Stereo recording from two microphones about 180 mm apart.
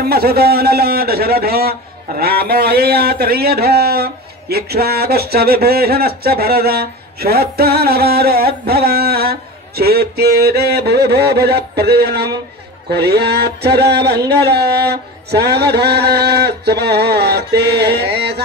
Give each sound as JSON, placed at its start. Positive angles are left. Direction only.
{"t": 0.0, "sound": "a man's voice", "side_deg": -60}